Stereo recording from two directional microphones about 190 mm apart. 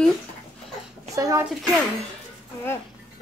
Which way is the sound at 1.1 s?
15° right (ahead or behind).